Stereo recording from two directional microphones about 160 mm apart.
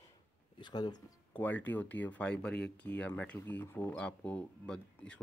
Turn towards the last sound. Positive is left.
turn(degrees=5)  # may be behind; listen again after turning